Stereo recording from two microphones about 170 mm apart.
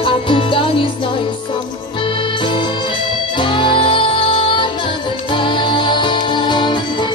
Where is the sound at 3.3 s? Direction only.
30° left (ahead or behind).